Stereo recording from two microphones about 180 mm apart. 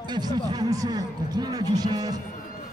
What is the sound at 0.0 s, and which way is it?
Speech, 25° right (ahead or behind).